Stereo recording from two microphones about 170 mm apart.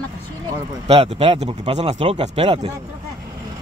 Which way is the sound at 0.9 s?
35° right (ahead or behind).